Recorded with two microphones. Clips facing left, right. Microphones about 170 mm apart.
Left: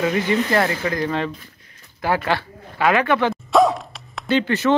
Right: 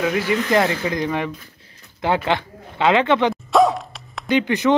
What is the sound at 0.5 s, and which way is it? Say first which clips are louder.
Speech: right 1 dB; 15° right (ahead or behind).